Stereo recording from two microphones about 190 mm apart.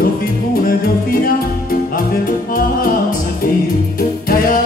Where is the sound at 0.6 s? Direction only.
50° left (ahead or behind).